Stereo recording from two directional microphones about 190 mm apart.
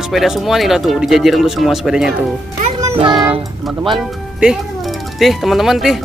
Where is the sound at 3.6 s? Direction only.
Centre (ahead or behind).